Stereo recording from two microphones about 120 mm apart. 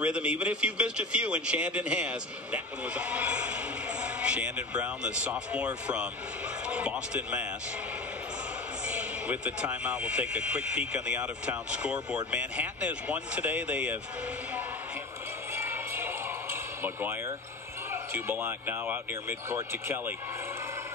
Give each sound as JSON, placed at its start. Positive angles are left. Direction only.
{"t": 0.0, "sound": "a man's voice", "side_deg": -10}
{"t": 6.7, "sound": "speech", "side_deg": -10}
{"t": 8.8, "sound": "a sound", "side_deg": -10}
{"t": 9.7, "sound": "a man's voice", "side_deg": -10}
{"t": 15.5, "sound": "basketball bounce", "side_deg": -20}
{"t": 17.9, "sound": "speech", "side_deg": -15}